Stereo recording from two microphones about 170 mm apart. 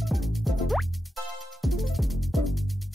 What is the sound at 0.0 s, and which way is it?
Music, centre (ahead or behind).